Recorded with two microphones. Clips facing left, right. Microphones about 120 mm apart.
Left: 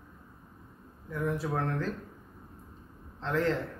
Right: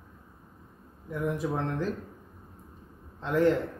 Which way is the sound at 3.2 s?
15° right (ahead or behind).